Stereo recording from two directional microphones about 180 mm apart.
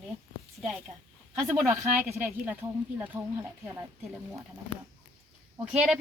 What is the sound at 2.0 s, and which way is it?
Speech, 10° right (ahead or behind).